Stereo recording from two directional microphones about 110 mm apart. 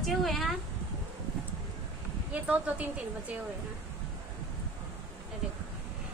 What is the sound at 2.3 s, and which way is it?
Speech, 10° right (ahead or behind).